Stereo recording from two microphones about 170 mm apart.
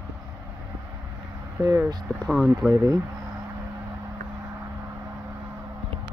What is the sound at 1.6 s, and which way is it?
Speech, 20° right (ahead or behind).